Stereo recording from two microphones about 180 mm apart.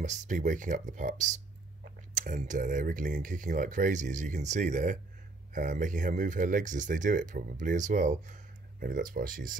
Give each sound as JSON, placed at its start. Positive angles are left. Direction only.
{"t": 0.0, "sound": "speech", "side_deg": -40}